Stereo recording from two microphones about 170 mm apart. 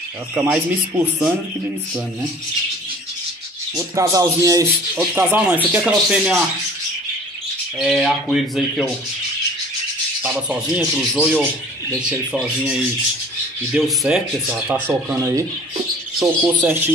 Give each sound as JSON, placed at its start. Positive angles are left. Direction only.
{"t": 0.3, "sound": "speech", "side_deg": -10}
{"t": 3.7, "sound": "speech", "side_deg": -20}
{"t": 7.8, "sound": "speech", "side_deg": 0}
{"t": 10.2, "sound": "speech", "side_deg": -10}
{"t": 13.7, "sound": "speech", "side_deg": 0}
{"t": 14.9, "sound": "speech", "side_deg": -15}